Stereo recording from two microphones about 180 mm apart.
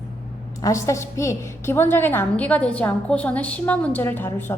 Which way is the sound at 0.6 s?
15° left (ahead or behind).